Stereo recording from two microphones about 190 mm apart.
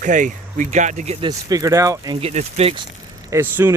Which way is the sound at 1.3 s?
20° right (ahead or behind).